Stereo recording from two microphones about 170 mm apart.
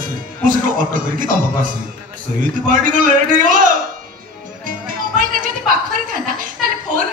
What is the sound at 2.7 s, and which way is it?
A man's voice, 50° right (ahead or behind).